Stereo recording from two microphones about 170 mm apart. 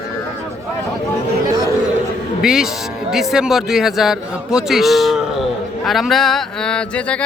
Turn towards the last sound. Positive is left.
turn(degrees=5)  # may be behind; listen again after turning